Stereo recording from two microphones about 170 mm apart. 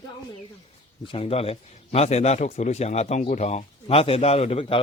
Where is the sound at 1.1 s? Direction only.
35° left (ahead or behind).